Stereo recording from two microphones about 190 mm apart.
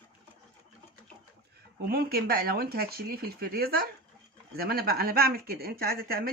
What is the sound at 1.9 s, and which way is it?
A woman's voice, 55° right (ahead or behind).